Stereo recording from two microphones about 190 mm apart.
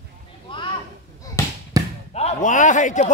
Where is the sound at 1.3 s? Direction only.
15° left (ahead or behind).